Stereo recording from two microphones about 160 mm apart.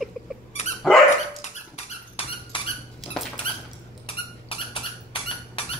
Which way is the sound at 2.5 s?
30° left (ahead or behind).